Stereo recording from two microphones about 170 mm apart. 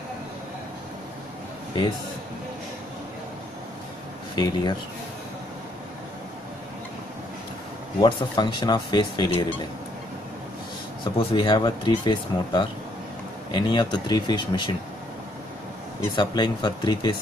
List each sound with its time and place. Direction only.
4.4 s speech: 25° left (ahead or behind)
8.0 s speech: 25° left (ahead or behind)
11.1 s speech: 30° left (ahead or behind)
16.2 s speech: 25° left (ahead or behind)